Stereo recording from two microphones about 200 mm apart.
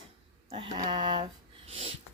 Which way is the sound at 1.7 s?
30° right (ahead or behind).